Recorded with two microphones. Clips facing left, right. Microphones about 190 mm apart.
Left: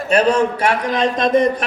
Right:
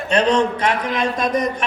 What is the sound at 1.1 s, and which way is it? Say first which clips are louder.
Speech: left 5 dB; 25° left (ahead or behind).